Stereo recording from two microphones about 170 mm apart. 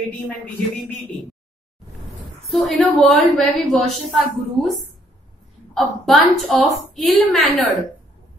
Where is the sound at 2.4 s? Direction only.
Centre (ahead or behind).